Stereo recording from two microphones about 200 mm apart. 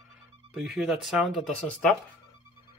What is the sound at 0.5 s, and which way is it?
Speech, centre (ahead or behind).